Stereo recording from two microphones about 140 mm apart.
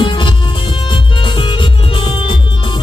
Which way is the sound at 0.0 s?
35° left (ahead or behind).